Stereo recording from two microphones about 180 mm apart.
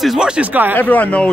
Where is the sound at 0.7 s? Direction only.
10° left (ahead or behind).